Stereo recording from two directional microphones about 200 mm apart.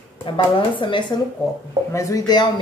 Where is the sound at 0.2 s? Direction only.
25° left (ahead or behind).